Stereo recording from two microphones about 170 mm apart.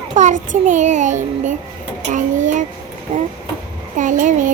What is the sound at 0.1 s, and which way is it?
A child's voice, 45° right (ahead or behind).